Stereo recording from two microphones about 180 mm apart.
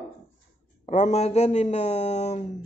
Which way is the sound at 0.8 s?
40° left (ahead or behind).